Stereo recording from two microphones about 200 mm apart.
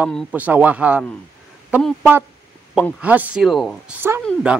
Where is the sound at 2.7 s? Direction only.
5° right (ahead or behind).